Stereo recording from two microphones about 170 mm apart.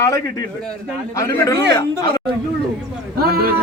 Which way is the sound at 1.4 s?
20° left (ahead or behind).